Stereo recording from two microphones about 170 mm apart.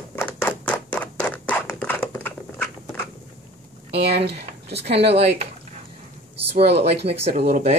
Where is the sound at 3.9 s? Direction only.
70° right (ahead or behind).